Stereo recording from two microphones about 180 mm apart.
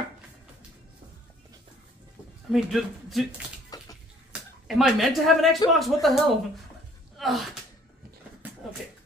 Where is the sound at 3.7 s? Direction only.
20° left (ahead or behind).